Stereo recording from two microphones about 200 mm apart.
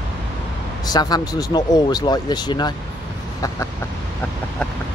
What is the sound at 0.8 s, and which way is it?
Speech, 20° left (ahead or behind).